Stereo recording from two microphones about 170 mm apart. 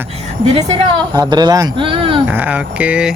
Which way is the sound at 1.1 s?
25° right (ahead or behind).